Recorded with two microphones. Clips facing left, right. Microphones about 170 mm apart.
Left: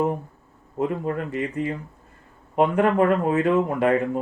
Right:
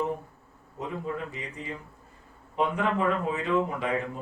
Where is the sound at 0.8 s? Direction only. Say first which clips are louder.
Left 8 dB; 60° left (ahead or behind).